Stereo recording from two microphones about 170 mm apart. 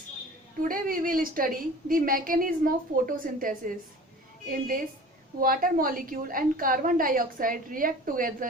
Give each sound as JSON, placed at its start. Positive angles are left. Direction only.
{"t": 0.7, "sound": "a woman's voice", "side_deg": -55}